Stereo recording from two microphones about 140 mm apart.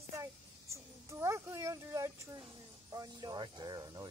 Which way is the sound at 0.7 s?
20° right (ahead or behind).